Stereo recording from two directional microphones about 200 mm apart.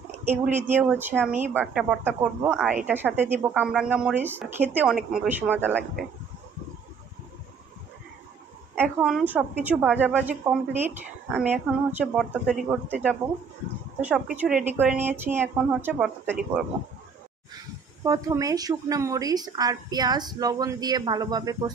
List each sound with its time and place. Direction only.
0.3 s a woman's voice: 10° right (ahead or behind)
8.7 s a woman's voice: 5° right (ahead or behind)
18.0 s a woman's voice: 15° right (ahead or behind)